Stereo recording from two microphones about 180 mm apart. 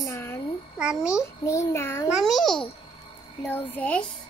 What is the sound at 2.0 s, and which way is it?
A child's voice, centre (ahead or behind).